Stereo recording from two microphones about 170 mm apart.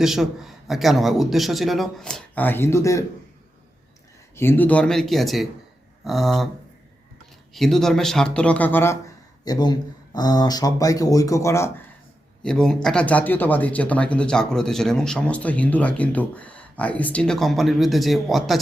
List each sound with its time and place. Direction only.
0.0 s a man's voice: centre (ahead or behind); by 3.0 s 15° left (ahead or behind)
4.4 s a man's voice: 10° left (ahead or behind)
7.5 s a man's voice: centre (ahead or behind)
9.4 s speech: 25° left (ahead or behind)
12.4 s speech: 5° left (ahead or behind)